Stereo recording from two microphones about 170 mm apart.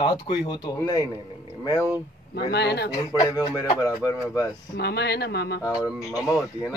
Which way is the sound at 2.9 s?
20° left (ahead or behind).